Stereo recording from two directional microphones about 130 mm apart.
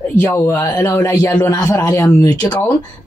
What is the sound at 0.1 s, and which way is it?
A woman's voice, 15° left (ahead or behind).